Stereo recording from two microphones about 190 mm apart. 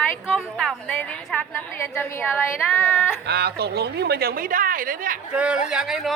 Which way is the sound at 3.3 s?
60° right (ahead or behind).